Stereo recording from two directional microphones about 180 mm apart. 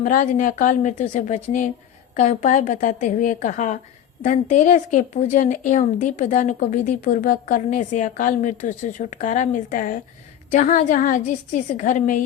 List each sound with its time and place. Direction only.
0.0 s speech: 45° left (ahead or behind)